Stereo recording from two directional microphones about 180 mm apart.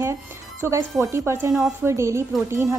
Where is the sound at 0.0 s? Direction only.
15° right (ahead or behind).